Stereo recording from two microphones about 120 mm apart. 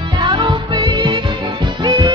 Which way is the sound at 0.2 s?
40° right (ahead or behind).